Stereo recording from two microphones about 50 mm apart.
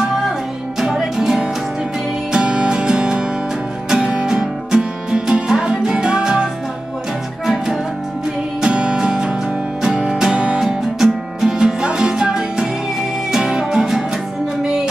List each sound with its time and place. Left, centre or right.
0.7 s music: centre
2.3 s music: centre